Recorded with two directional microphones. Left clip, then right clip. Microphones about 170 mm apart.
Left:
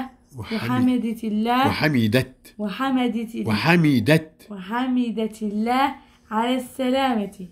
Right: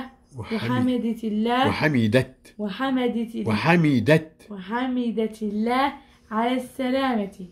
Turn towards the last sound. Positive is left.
turn(degrees=35)  # may be behind; listen again after turning